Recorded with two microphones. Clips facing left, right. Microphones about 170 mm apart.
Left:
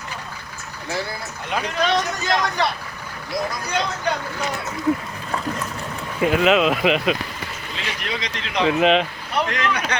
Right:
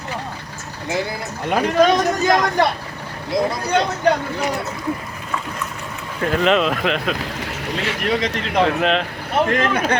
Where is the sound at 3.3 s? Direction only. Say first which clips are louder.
Right 6 dB; 25° right (ahead or behind).